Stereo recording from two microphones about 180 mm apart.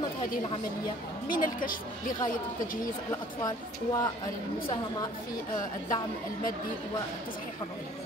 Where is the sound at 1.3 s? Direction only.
50° left (ahead or behind).